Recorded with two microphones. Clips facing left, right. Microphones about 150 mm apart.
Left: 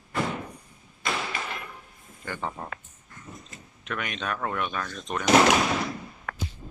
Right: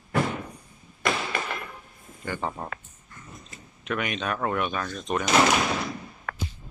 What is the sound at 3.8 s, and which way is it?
Speech, 5° right (ahead or behind).